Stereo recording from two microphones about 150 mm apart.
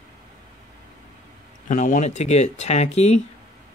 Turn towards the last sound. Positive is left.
turn(degrees=45)  # may be behind; listen again after turning